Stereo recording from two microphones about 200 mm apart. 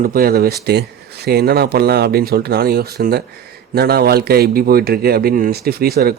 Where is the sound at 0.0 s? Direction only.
45° right (ahead or behind).